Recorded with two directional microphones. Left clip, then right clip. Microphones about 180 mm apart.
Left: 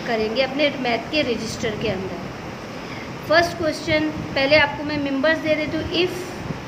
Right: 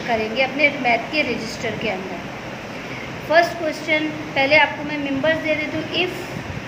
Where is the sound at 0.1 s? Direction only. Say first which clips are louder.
Right 1 dB; 35° left (ahead or behind).